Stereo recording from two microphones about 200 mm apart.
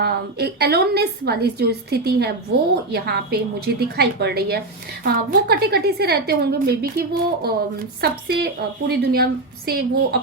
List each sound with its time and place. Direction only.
0.0 s a woman's voice: 55° right (ahead or behind)